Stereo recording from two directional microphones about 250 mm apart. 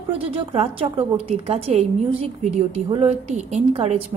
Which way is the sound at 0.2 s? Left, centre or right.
Right.